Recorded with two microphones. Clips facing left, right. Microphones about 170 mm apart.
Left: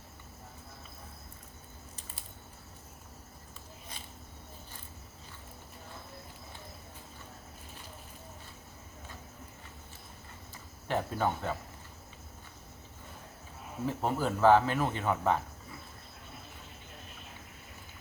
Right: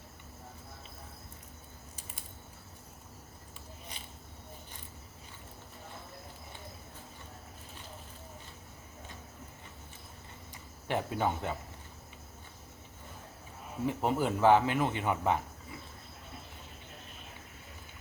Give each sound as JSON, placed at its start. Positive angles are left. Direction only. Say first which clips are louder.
{"t": 10.5, "sound": "speech", "louder": "left 1 dB", "side_deg": -15}
{"t": 13.8, "sound": "speech", "louder": "right 1 dB", "side_deg": -15}